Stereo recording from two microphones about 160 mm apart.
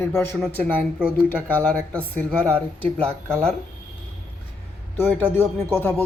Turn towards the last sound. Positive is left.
turn(degrees=15)  # may be behind; listen again after turning